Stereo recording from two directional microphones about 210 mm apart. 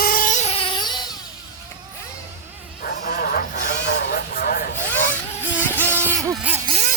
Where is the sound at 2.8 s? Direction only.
45° left (ahead or behind).